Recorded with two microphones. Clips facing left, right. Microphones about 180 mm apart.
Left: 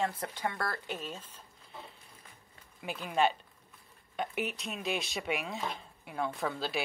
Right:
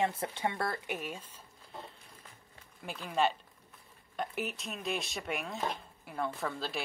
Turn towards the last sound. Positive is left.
turn(degrees=0)  # may be behind; listen again after turning